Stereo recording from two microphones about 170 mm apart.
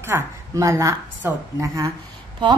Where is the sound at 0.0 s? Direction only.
15° right (ahead or behind).